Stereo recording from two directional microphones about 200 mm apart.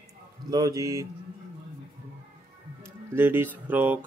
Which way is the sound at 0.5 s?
20° right (ahead or behind).